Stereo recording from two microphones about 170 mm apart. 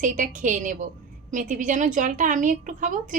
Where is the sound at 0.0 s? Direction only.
50° right (ahead or behind).